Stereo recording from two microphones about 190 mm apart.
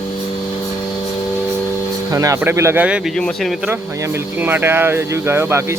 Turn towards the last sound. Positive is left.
turn(degrees=-15)  # may be behind; listen again after turning